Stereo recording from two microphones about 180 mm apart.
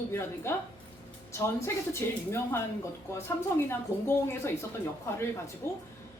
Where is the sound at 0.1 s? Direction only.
15° left (ahead or behind).